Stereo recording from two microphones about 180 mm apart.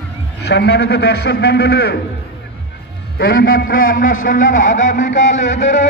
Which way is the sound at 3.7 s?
50° left (ahead or behind).